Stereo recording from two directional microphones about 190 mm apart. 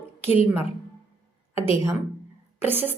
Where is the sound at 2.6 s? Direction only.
10° right (ahead or behind).